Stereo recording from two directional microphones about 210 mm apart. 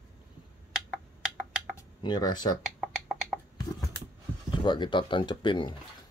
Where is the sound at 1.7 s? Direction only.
20° left (ahead or behind).